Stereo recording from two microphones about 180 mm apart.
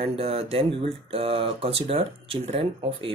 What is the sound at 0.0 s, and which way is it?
Speech, 35° right (ahead or behind).